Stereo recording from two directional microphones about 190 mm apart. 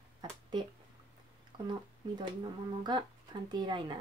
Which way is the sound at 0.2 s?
25° right (ahead or behind).